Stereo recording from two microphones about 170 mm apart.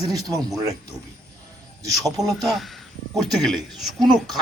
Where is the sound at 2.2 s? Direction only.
Centre (ahead or behind).